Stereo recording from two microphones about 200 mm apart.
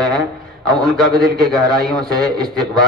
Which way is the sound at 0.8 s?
20° right (ahead or behind).